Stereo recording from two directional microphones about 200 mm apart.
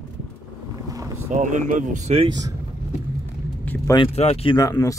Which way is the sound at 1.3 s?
40° right (ahead or behind).